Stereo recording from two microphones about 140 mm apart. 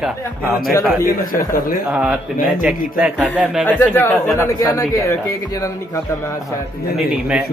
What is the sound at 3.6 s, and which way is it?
Speech, 15° left (ahead or behind).